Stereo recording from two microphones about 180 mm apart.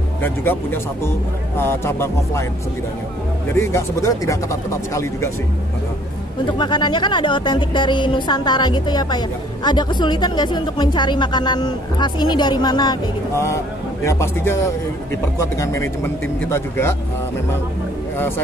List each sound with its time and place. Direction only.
0.2 s a man's voice: 10° left (ahead or behind)
3.7 s a man's voice: 15° left (ahead or behind)
6.4 s speech: 25° left (ahead or behind)
14.0 s a man's voice: 15° left (ahead or behind)